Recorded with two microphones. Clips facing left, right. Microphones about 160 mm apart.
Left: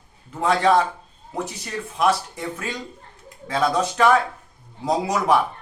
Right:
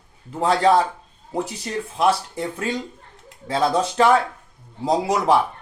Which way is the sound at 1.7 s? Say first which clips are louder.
Right 1 dB; 30° right (ahead or behind).